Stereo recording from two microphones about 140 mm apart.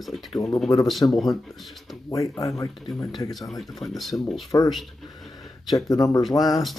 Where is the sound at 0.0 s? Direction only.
Centre (ahead or behind).